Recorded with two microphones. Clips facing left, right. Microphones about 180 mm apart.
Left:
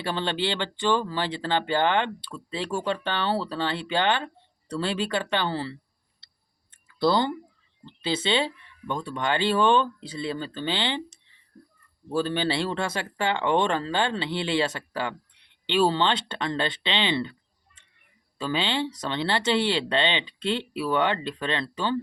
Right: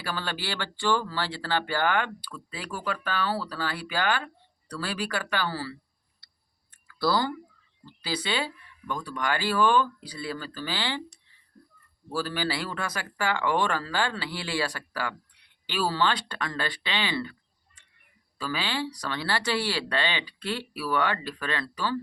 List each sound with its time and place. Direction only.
0.0 s speech: 25° left (ahead or behind)
6.8 s speech: 20° left (ahead or behind)
18.3 s speech: 25° left (ahead or behind)